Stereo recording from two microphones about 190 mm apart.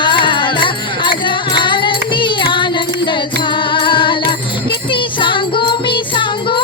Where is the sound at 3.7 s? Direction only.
25° left (ahead or behind).